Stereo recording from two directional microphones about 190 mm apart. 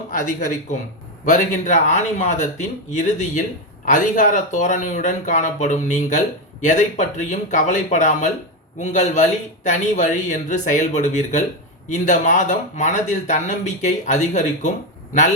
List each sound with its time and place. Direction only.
0.1 s speech: 45° left (ahead or behind)